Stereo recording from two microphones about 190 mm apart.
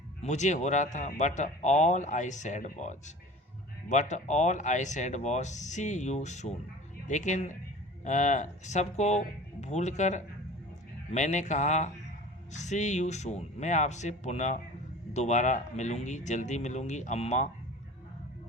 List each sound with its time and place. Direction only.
0.2 s speech: 40° left (ahead or behind)